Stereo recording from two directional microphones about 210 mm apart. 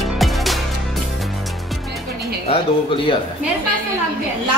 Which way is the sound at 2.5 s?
30° left (ahead or behind).